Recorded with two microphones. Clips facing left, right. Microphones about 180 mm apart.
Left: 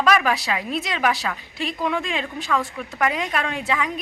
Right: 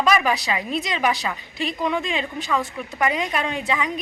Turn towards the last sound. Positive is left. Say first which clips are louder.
# even
turn(degrees=0)  # may be behind; listen again after turning